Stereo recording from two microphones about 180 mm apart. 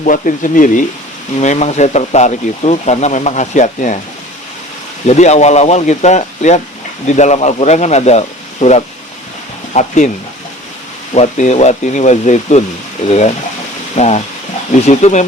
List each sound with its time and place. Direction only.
0.0 s speech: 45° left (ahead or behind)
5.0 s speech: 40° left (ahead or behind)
11.1 s speech: 40° left (ahead or behind)